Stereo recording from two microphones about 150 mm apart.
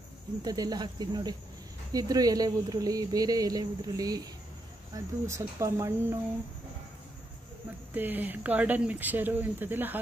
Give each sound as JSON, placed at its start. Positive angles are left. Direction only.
{"t": 0.4, "sound": "speech", "side_deg": -25}
{"t": 7.9, "sound": "speech", "side_deg": -10}